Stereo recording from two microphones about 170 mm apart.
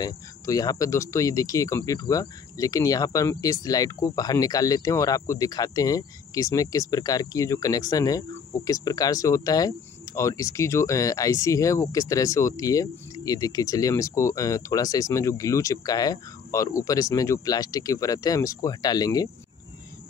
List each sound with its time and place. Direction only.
0.0 s speech: 20° left (ahead or behind)